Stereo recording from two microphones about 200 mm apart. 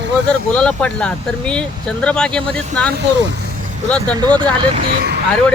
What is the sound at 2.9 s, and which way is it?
Speech, 60° right (ahead or behind).